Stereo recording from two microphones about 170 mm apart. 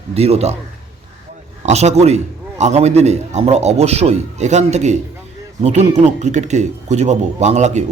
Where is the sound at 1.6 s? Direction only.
40° right (ahead or behind).